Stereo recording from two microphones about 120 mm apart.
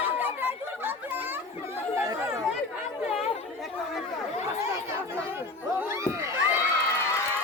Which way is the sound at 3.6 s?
Centre (ahead or behind).